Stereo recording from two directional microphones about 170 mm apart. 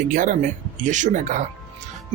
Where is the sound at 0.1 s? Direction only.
50° right (ahead or behind).